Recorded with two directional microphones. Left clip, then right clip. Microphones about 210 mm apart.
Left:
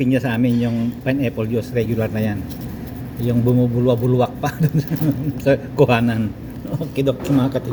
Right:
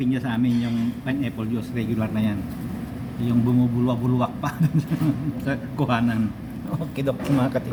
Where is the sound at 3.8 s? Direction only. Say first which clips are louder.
Left 7 dB; 15° left (ahead or behind).